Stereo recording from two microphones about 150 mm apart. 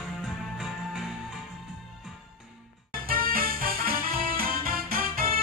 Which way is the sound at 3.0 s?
75° right (ahead or behind).